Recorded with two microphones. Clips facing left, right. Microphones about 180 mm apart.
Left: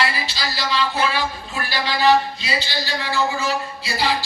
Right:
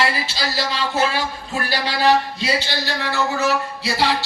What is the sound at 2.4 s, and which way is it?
Speech, 60° right (ahead or behind).